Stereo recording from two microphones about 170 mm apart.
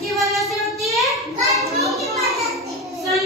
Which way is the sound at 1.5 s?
20° right (ahead or behind).